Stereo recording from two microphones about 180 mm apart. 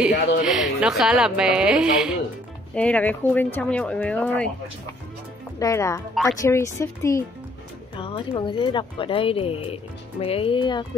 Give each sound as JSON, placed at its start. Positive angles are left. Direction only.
{"t": 0.5, "sound": "a woman's voice", "side_deg": -5}
{"t": 2.7, "sound": "speech", "side_deg": 5}
{"t": 5.6, "sound": "speech", "side_deg": 15}
{"t": 8.0, "sound": "speech", "side_deg": 30}